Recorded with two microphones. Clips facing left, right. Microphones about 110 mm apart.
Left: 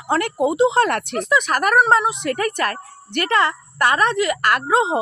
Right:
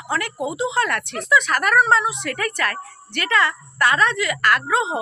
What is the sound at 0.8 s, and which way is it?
Speech, 35° left (ahead or behind).